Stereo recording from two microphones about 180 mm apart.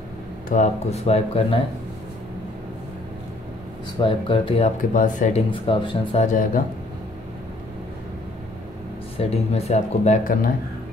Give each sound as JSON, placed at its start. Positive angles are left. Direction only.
{"t": 0.5, "sound": "speech", "side_deg": 40}
{"t": 4.0, "sound": "speech", "side_deg": 30}
{"t": 4.9, "sound": "speech", "side_deg": 45}
{"t": 5.5, "sound": "speech", "side_deg": 30}
{"t": 6.2, "sound": "speech", "side_deg": 45}
{"t": 9.1, "sound": "speech", "side_deg": 35}